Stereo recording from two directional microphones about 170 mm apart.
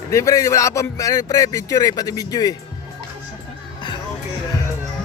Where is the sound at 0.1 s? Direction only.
15° left (ahead or behind).